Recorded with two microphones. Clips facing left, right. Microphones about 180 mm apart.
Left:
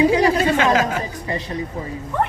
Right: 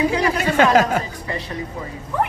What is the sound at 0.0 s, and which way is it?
Speech, 25° left (ahead or behind).